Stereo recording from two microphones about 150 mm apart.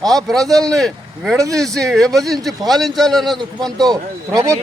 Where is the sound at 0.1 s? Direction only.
Centre (ahead or behind).